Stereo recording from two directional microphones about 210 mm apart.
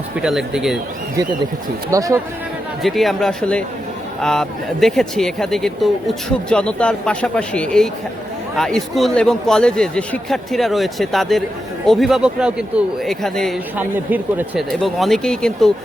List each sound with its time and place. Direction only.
0.2 s speech: centre (ahead or behind)
1.9 s speech: 15° right (ahead or behind)
2.8 s speech: centre (ahead or behind)